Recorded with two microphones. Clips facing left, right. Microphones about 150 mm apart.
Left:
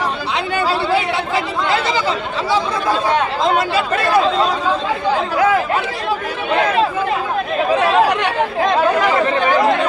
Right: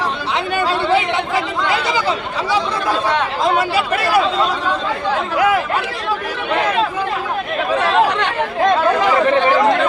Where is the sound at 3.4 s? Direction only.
10° right (ahead or behind).